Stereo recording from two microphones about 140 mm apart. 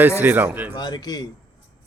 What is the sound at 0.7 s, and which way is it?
Speech, 30° left (ahead or behind).